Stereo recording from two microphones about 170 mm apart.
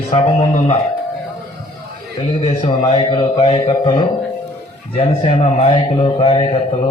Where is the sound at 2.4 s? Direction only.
40° left (ahead or behind).